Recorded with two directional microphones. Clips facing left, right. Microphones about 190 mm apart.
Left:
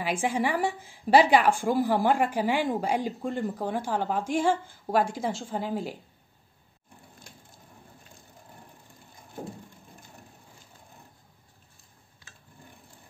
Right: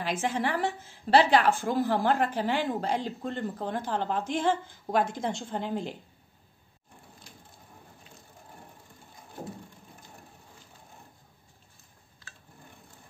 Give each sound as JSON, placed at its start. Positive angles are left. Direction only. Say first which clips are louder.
{"t": 0.0, "sound": "a woman's voice", "louder": "left 2 dB", "side_deg": 10}
{"t": 7.3, "sound": "wood", "louder": "left 1 dB", "side_deg": 55}